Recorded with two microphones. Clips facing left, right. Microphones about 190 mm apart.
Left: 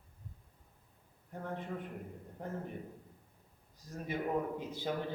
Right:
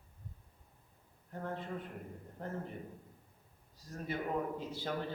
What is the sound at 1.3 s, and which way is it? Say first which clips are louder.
Speech: even; 15° left (ahead or behind).